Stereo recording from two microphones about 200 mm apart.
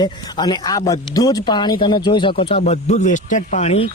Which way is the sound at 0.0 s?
20° left (ahead or behind).